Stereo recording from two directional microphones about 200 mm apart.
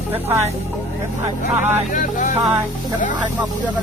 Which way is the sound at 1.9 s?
40° left (ahead or behind).